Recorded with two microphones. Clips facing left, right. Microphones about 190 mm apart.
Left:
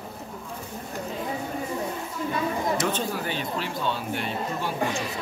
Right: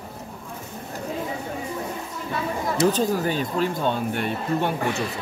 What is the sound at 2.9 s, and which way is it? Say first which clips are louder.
Speech: right 7 dB; 40° right (ahead or behind).